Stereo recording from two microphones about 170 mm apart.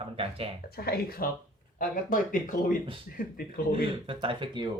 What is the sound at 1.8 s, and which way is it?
Speech, 55° left (ahead or behind).